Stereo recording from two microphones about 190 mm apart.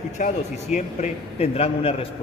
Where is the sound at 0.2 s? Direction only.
40° left (ahead or behind).